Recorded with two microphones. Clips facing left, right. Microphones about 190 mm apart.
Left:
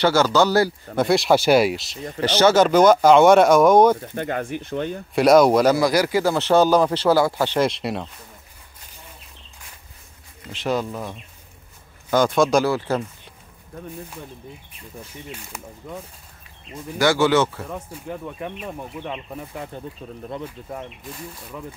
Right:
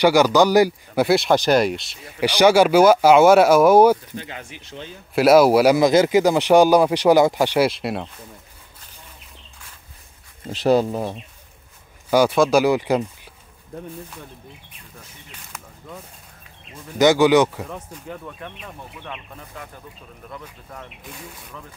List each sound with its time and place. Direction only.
0.0 s speech: 15° right (ahead or behind)
0.9 s speech: centre (ahead or behind)
2.1 s speech: 10° right (ahead or behind)
4.1 s speech: 55° left (ahead or behind)
5.1 s speech: 5° right (ahead or behind)
5.8 s speech: 20° right (ahead or behind); by 8.1 s centre (ahead or behind)
10.4 s speech: 35° right (ahead or behind)
12.1 s speech: 10° right (ahead or behind)
12.6 s speech: 15° right (ahead or behind)
15.3 s speech: 10° left (ahead or behind)
17.0 s speech: 15° right (ahead or behind)
17.6 s speech: 10° left (ahead or behind)
19.0 s speech: 20° left (ahead or behind)
21.1 s speech: centre (ahead or behind)